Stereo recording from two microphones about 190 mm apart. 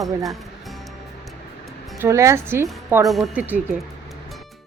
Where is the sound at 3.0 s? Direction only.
Centre (ahead or behind).